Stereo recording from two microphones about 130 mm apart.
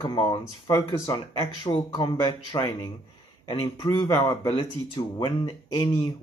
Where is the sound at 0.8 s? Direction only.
30° left (ahead or behind).